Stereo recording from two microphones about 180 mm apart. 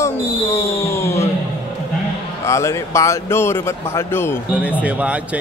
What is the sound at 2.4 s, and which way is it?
Speech, 15° left (ahead or behind).